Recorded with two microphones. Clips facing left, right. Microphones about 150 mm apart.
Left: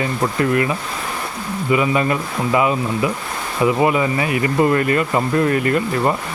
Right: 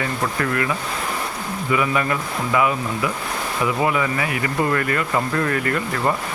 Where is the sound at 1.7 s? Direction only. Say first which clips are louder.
Left 4 dB; 20° left (ahead or behind).